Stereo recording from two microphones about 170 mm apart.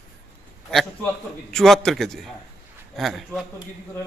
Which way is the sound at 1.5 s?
Centre (ahead or behind).